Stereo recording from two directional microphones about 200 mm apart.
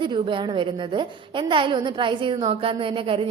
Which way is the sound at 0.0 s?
25° right (ahead or behind).